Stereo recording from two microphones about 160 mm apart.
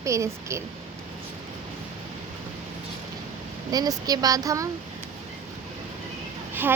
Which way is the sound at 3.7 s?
25° right (ahead or behind).